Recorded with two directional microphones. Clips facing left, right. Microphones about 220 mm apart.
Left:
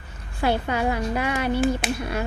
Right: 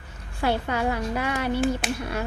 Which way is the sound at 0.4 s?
15° left (ahead or behind).